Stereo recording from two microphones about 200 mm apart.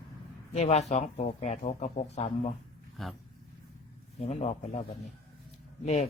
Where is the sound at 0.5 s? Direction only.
35° left (ahead or behind).